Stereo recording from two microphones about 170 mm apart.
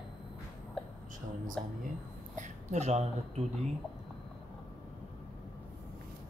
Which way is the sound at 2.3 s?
45° right (ahead or behind).